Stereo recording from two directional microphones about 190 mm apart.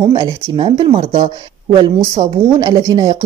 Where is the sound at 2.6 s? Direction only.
20° right (ahead or behind).